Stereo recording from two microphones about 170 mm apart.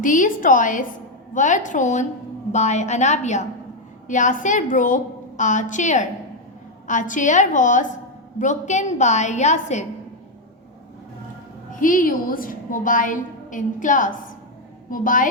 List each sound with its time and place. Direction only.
0.0 s a woman's voice: 50° left (ahead or behind)
11.7 s a woman's voice: 55° left (ahead or behind)